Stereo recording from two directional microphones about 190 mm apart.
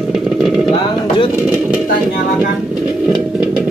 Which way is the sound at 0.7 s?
25° left (ahead or behind).